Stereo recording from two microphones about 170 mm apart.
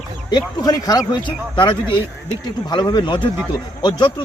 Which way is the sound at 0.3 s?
25° left (ahead or behind).